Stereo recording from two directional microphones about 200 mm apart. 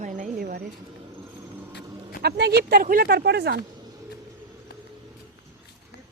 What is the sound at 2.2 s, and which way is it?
Speech, 55° right (ahead or behind).